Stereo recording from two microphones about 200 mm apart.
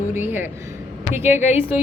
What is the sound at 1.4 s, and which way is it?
Speech, 35° left (ahead or behind).